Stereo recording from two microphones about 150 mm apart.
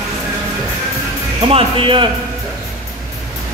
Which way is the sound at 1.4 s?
35° right (ahead or behind).